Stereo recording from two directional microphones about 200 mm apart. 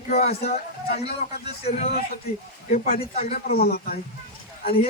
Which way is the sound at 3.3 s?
50° left (ahead or behind).